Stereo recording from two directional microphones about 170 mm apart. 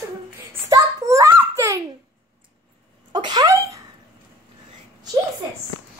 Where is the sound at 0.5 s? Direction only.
20° right (ahead or behind).